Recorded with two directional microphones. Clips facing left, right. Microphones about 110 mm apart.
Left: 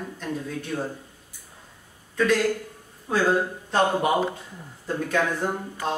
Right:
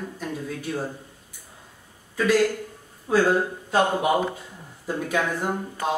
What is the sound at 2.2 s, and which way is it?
A woman's voice, 5° right (ahead or behind).